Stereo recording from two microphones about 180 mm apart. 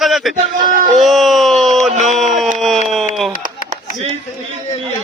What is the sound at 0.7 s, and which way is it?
Speech, 50° right (ahead or behind).